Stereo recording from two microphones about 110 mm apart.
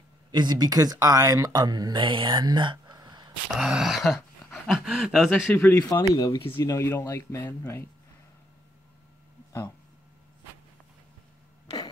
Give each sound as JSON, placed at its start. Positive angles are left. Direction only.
{"t": 0.3, "sound": "speech", "side_deg": -40}
{"t": 3.5, "sound": "speech", "side_deg": -5}
{"t": 5.5, "sound": "speech", "side_deg": 15}
{"t": 5.8, "sound": "speech", "side_deg": 30}
{"t": 9.5, "sound": "speech", "side_deg": 30}